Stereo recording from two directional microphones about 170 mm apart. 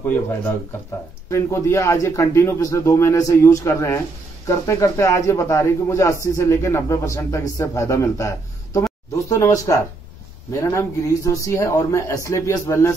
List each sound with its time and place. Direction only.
0.0 s speech: 10° left (ahead or behind)